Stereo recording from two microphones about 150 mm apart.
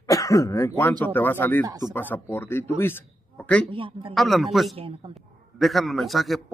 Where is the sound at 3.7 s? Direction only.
35° right (ahead or behind).